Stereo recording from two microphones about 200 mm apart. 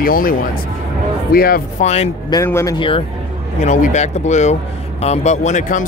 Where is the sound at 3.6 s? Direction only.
35° left (ahead or behind).